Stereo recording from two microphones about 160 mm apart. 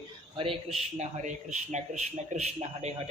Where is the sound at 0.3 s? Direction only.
35° right (ahead or behind).